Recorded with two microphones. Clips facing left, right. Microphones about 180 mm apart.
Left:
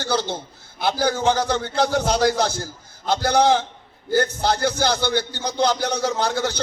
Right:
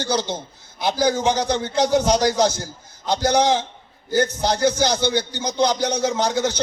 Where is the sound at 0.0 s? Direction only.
15° right (ahead or behind).